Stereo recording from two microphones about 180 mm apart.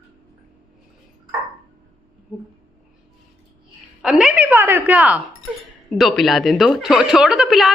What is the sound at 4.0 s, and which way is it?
A woman's voice, 5° right (ahead or behind).